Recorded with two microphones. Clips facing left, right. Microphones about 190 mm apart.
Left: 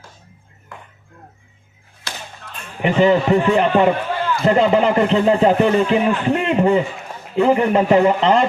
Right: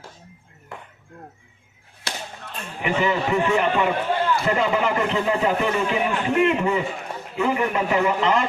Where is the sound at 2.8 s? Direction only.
35° left (ahead or behind).